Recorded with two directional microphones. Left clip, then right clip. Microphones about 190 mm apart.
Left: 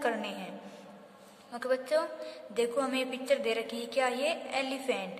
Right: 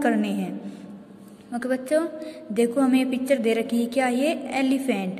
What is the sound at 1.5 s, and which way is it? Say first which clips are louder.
A woman's voice: right 6 dB; 15° right (ahead or behind).